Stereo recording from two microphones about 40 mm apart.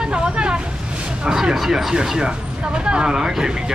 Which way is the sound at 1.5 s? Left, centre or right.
Centre.